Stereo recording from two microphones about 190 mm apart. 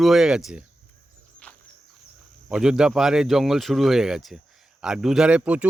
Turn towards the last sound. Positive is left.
turn(degrees=-5)  # may be behind; listen again after turning